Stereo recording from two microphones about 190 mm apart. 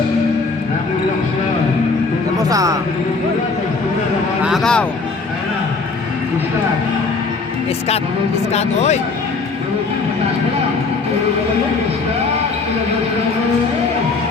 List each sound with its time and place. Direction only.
2.5 s speech: 20° right (ahead or behind)
4.4 s speech: centre (ahead or behind)
8.5 s speech: 35° left (ahead or behind)